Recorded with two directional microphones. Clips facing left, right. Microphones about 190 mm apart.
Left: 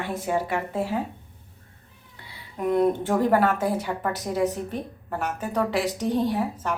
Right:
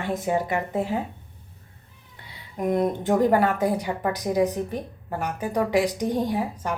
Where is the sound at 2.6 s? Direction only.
15° right (ahead or behind).